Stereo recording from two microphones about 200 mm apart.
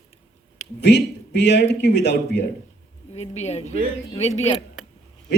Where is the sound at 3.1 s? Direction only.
35° left (ahead or behind).